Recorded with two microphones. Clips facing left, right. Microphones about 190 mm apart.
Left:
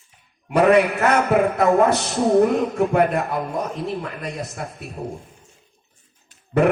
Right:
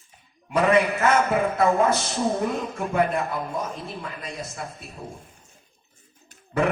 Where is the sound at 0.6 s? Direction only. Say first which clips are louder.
Left 4 dB; 65° left (ahead or behind).